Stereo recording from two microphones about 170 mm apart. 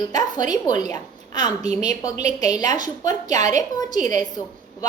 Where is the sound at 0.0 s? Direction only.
25° left (ahead or behind).